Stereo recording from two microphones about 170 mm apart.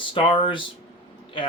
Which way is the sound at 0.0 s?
30° left (ahead or behind).